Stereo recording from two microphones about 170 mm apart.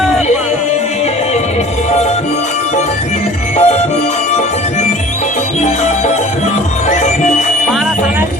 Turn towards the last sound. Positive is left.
turn(degrees=45)  # may be behind; listen again after turning